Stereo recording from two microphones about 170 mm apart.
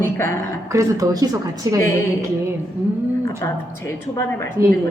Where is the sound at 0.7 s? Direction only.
20° right (ahead or behind).